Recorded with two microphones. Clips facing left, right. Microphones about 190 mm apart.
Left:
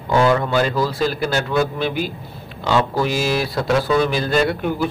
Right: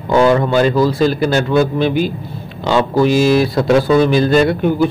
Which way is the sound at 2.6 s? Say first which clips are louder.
Right 4 dB; 25° right (ahead or behind).